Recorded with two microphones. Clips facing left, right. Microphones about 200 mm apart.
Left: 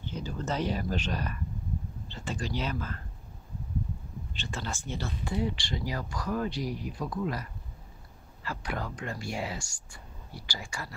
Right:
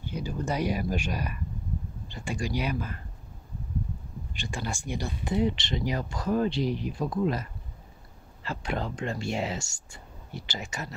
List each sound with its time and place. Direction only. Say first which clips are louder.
0.0 s speech: right 3 dB; 10° right (ahead or behind)
4.3 s speech: right 3 dB; 15° right (ahead or behind)
8.5 s speech: right 4 dB; 25° right (ahead or behind)